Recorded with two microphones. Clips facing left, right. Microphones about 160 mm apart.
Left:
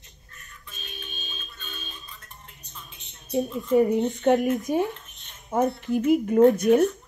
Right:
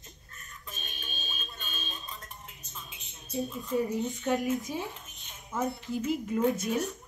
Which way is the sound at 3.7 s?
70° left (ahead or behind).